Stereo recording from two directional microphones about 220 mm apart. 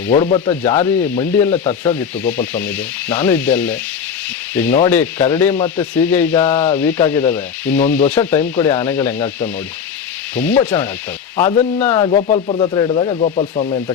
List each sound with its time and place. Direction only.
0.1 s speech: 25° left (ahead or behind)
0.6 s speech: 10° left (ahead or behind)
12.1 s speech: 30° left (ahead or behind)